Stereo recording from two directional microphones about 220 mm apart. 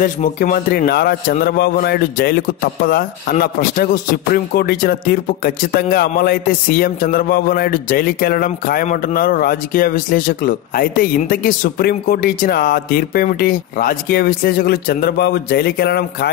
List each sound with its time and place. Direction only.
0.0 s a man's voice: 40° left (ahead or behind)